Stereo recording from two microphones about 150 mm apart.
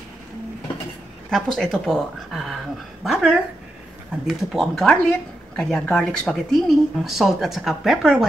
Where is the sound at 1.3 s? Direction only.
Centre (ahead or behind).